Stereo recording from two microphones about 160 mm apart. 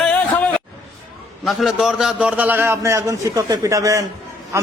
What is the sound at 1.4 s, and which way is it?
A man's voice, centre (ahead or behind).